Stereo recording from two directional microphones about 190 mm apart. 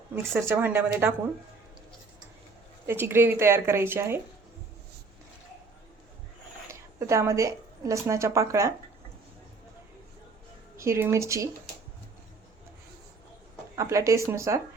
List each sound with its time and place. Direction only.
0.2 s speech: 15° right (ahead or behind)
2.8 s speech: 10° right (ahead or behind)
6.7 s a woman's voice: 15° right (ahead or behind)
10.8 s speech: 15° right (ahead or behind)
13.7 s speech: 15° right (ahead or behind)